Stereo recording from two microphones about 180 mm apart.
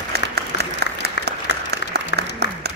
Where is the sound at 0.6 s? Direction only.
65° right (ahead or behind).